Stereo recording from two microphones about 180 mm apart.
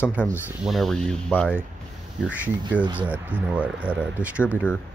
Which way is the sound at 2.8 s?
25° right (ahead or behind).